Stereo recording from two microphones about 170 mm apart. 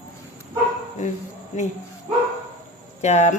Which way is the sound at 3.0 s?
40° left (ahead or behind).